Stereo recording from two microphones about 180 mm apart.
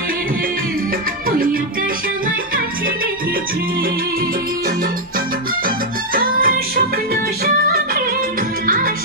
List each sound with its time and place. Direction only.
6.1 s music: 55° right (ahead or behind)
8.6 s music: 50° right (ahead or behind)